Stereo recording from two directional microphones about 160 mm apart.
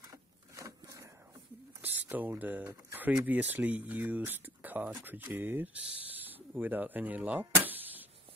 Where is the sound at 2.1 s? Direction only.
10° right (ahead or behind).